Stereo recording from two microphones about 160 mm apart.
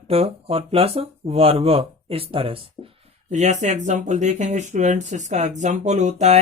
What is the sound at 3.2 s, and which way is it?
Speech, 45° right (ahead or behind).